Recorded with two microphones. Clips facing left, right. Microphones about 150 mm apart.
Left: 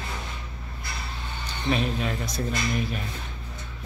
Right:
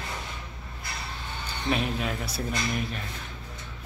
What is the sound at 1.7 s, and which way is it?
Speech, 5° right (ahead or behind).